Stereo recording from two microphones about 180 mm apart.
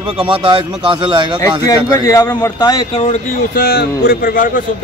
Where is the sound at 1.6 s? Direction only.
20° left (ahead or behind).